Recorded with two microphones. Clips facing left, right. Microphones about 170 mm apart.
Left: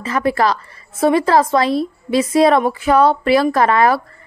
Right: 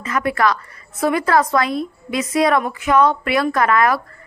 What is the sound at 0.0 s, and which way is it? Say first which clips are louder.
A woman's voice: left 2 dB; 30° left (ahead or behind).